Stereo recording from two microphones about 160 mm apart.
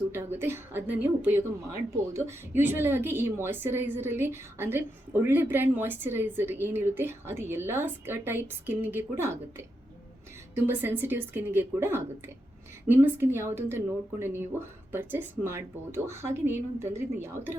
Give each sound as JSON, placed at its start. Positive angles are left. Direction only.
{"t": 0.1, "sound": "a woman's voice", "side_deg": -15}